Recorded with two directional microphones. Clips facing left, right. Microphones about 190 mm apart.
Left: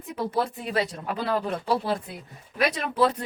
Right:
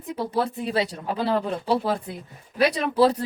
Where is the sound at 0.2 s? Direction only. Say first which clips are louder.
Right 1 dB; 30° right (ahead or behind).